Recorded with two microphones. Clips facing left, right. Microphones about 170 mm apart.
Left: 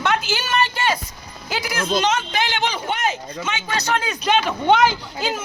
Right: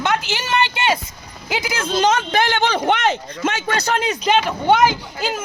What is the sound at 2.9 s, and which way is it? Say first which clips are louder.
Speech: right 5 dB; 75° right (ahead or behind).